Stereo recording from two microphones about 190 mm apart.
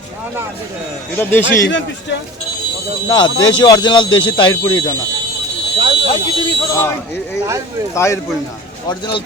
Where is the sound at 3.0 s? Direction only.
25° left (ahead or behind).